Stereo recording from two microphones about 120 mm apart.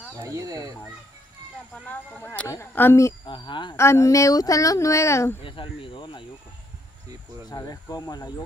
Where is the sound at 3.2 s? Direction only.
40° left (ahead or behind).